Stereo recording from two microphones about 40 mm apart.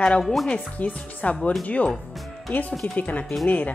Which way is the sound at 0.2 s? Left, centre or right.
Centre.